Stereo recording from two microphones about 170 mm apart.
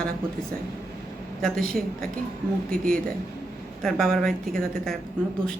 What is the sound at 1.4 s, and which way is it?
Speech, 5° left (ahead or behind).